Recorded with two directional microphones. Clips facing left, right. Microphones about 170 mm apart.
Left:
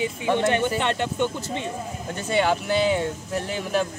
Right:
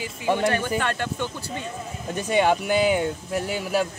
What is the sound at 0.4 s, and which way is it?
Speech, 20° left (ahead or behind).